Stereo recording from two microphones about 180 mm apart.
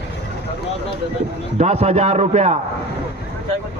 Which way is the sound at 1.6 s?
40° right (ahead or behind).